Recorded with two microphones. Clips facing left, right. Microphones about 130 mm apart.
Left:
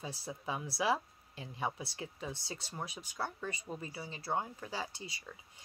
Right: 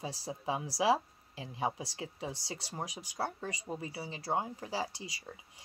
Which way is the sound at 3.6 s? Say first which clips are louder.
Right 3 dB; 20° right (ahead or behind).